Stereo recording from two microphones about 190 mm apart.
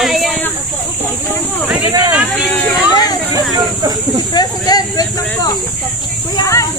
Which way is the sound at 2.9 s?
20° left (ahead or behind).